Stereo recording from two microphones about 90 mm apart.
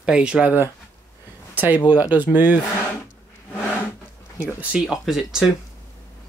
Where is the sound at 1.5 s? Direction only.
20° right (ahead or behind).